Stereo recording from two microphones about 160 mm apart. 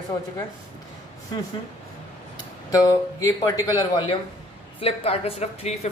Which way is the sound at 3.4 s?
25° left (ahead or behind).